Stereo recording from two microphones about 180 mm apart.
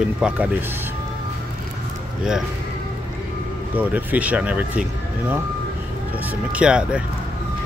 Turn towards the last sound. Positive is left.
turn(degrees=-5)  # may be behind; listen again after turning